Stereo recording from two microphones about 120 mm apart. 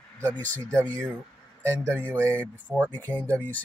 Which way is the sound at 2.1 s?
20° right (ahead or behind).